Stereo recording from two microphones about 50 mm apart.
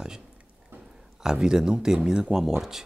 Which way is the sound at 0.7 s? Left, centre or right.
Right.